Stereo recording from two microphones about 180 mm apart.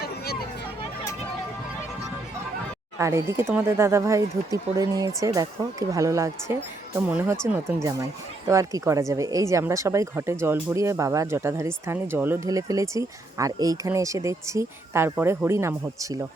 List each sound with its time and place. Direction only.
0.0 s vehicle: 60° left (ahead or behind)
3.0 s speech: 15° right (ahead or behind)